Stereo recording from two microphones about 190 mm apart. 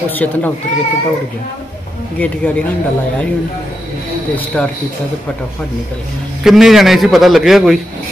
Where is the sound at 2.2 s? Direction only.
10° left (ahead or behind).